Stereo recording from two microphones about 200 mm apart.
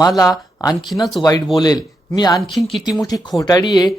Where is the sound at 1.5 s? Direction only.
20° left (ahead or behind).